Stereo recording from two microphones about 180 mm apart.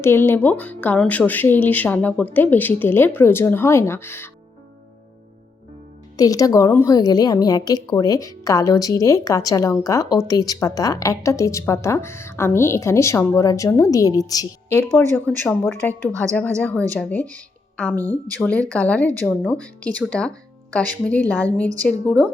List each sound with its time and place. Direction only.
0.0 s a woman's voice: 15° left (ahead or behind)
6.1 s a woman's voice: 20° left (ahead or behind)
15.1 s a woman's voice: centre (ahead or behind)